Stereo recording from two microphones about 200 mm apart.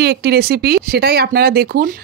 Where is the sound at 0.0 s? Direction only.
55° right (ahead or behind).